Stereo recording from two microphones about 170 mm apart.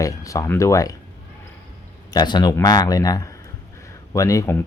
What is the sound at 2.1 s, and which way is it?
Speech, 25° left (ahead or behind).